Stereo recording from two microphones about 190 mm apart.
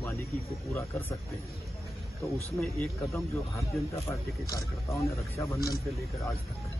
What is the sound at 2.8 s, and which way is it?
Speech, 15° left (ahead or behind).